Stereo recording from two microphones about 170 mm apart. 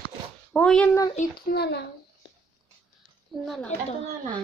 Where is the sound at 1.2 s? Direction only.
45° left (ahead or behind).